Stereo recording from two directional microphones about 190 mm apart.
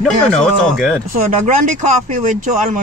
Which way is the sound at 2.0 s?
40° right (ahead or behind).